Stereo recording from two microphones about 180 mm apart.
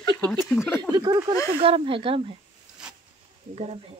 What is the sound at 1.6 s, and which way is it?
Speech, 30° right (ahead or behind).